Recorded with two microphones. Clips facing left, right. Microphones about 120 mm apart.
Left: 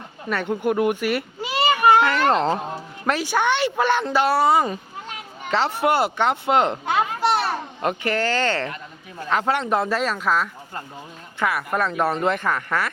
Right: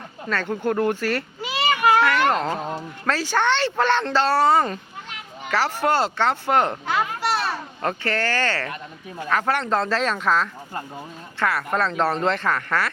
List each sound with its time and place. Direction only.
0.3 s speech: 15° left (ahead or behind)
1.9 s speech: 25° left (ahead or behind); by 4.8 s 10° left (ahead or behind)
5.5 s speech: 20° left (ahead or behind)
7.3 s children playing: 25° left (ahead or behind)
9.3 s speech: 20° left (ahead or behind)